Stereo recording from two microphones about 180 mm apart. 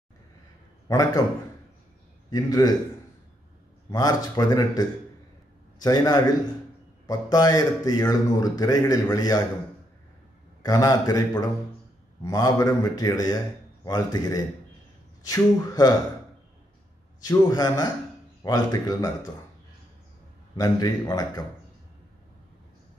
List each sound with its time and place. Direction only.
0.8 s a man's voice: 20° left (ahead or behind)
2.3 s a man's voice: 20° left (ahead or behind)
3.9 s a man's voice: 20° left (ahead or behind)
10.6 s a man's voice: 20° left (ahead or behind)
17.3 s a man's voice: 20° left (ahead or behind)
20.5 s a man's voice: 20° left (ahead or behind)